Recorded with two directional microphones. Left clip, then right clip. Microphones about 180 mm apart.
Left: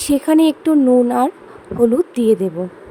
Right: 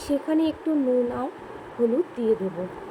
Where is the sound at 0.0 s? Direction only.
65° left (ahead or behind).